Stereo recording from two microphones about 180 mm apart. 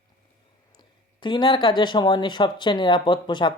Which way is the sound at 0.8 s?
25° left (ahead or behind).